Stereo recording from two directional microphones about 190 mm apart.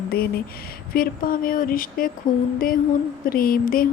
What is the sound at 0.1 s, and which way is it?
Speech, 55° left (ahead or behind).